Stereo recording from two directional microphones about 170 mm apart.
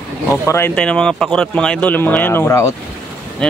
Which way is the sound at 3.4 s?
5° left (ahead or behind).